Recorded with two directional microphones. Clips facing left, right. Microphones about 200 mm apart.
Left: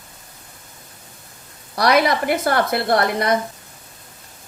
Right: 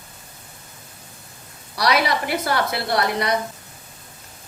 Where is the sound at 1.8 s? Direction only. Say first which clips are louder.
Left 4 dB; 50° left (ahead or behind).